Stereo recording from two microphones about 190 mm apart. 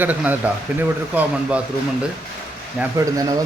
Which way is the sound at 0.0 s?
10° right (ahead or behind).